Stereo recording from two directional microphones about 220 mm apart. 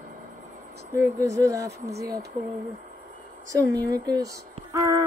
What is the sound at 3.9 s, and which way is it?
Speech, 15° right (ahead or behind).